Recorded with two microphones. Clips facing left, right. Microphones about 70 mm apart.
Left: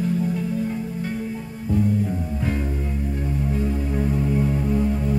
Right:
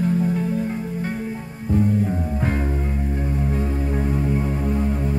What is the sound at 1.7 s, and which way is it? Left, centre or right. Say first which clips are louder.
Music: right 2 dB; right.